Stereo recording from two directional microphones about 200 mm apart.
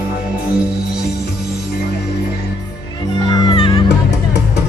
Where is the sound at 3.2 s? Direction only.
25° left (ahead or behind).